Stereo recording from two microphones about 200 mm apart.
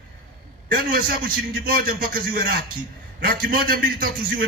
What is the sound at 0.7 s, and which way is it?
A man's voice, 45° right (ahead or behind).